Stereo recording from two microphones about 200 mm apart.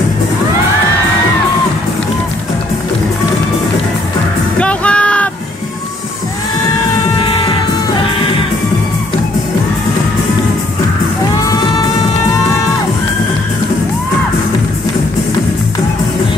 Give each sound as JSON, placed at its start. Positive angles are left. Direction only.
{"t": 4.6, "sound": "music", "side_deg": 5}
{"t": 7.2, "sound": "music", "side_deg": 25}